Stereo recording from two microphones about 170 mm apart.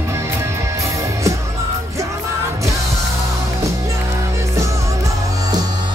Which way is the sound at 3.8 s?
15° right (ahead or behind).